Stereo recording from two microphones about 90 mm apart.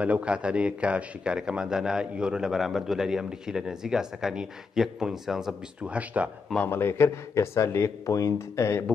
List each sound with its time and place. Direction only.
0.0 s a man's voice: 15° right (ahead or behind)
5.9 s a man's voice: 15° right (ahead or behind)
6.7 s speech: 25° left (ahead or behind)